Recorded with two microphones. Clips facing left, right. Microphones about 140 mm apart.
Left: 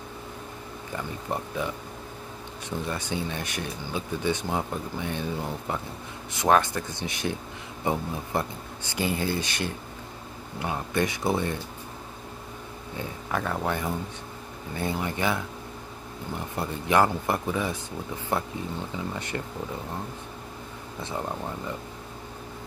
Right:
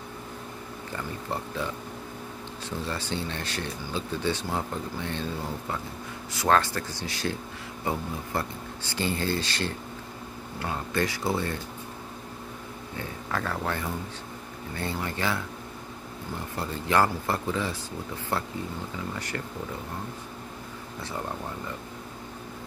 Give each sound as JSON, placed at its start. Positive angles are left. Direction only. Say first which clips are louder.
{"t": 0.9, "sound": "speech", "louder": "left 2 dB", "side_deg": 15}
{"t": 2.8, "sound": "speech", "louder": "left 1 dB", "side_deg": 15}
{"t": 12.9, "sound": "speech", "louder": "left 2 dB", "side_deg": 15}
{"t": 16.5, "sound": "speech", "louder": "left 2 dB", "side_deg": 15}